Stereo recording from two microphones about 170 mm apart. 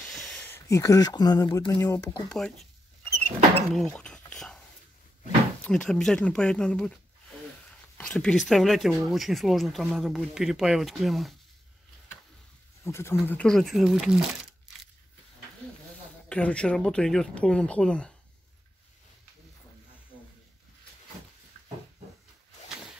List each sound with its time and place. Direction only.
0.1 s speech: centre (ahead or behind); by 2.2 s 20° left (ahead or behind)
2.3 s speech: centre (ahead or behind)
3.7 s a sound: 5° left (ahead or behind)
5.6 s speech: 5° left (ahead or behind)
8.0 s speech: 5° left (ahead or behind)
12.8 s speech: 15° left (ahead or behind); by 14.5 s centre (ahead or behind)
16.3 s speech: 5° left (ahead or behind)